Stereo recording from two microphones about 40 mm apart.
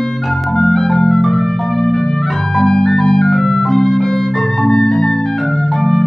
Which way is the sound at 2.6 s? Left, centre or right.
Centre.